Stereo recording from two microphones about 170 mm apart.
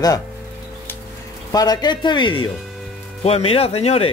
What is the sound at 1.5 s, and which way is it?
Speech, 20° left (ahead or behind).